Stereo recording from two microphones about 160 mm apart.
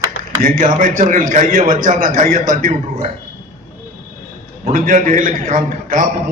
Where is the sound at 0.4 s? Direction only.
55° right (ahead or behind).